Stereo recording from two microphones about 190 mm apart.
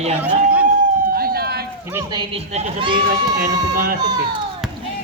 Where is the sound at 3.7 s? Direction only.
50° right (ahead or behind).